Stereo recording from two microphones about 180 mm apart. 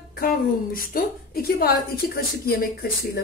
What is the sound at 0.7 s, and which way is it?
A woman's voice, 55° left (ahead or behind).